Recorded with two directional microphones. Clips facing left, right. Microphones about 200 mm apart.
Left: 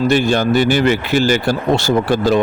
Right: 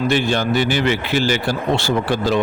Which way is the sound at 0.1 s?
45° left (ahead or behind).